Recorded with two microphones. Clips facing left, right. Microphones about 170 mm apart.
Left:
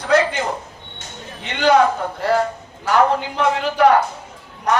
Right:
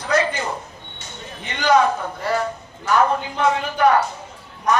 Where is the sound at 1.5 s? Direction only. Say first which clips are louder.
Left 2 dB; 65° left (ahead or behind).